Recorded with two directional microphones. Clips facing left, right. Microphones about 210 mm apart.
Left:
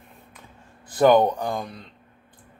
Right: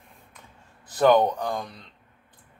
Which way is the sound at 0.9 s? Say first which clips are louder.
Left 2 dB; 10° left (ahead or behind).